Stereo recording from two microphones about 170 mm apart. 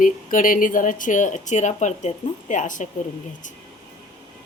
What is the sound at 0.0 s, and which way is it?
Speech, 50° left (ahead or behind).